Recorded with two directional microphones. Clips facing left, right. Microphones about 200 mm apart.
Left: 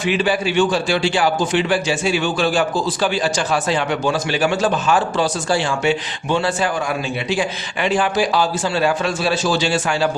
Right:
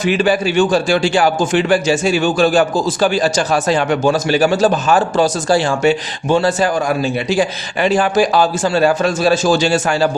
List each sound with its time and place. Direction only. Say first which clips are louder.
0.0 s a man's voice: right 4 dB; 45° right (ahead or behind)